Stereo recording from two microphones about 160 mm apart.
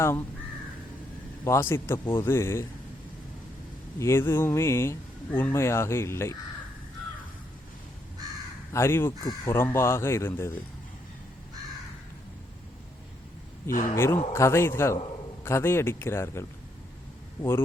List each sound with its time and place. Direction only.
0.0 s speech: 15° left (ahead or behind)
1.5 s speech: 15° left (ahead or behind)
4.0 s speech: 15° left (ahead or behind)
8.7 s speech: 15° left (ahead or behind)
13.7 s speech: 60° left (ahead or behind)
13.9 s speech: 15° left (ahead or behind)